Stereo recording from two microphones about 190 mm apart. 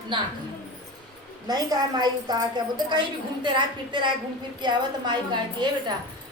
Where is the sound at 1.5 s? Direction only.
20° right (ahead or behind).